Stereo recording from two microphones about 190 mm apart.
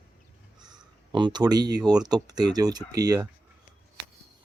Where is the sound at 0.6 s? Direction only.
25° right (ahead or behind).